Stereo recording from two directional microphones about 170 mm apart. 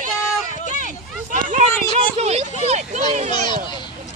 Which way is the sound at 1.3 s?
50° right (ahead or behind).